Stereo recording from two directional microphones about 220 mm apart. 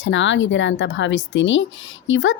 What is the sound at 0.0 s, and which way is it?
A woman's voice, 55° left (ahead or behind).